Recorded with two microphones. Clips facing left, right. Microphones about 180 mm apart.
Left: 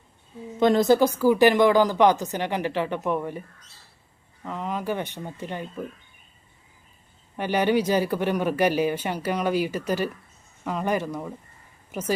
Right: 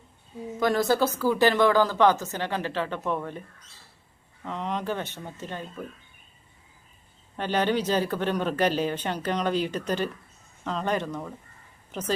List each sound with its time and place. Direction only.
0.6 s speech: 20° left (ahead or behind)
4.4 s speech: 5° left (ahead or behind)
7.3 s speech: 10° left (ahead or behind)